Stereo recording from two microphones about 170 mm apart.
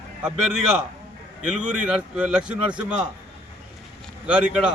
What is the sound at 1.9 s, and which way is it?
A man's voice, 5° right (ahead or behind).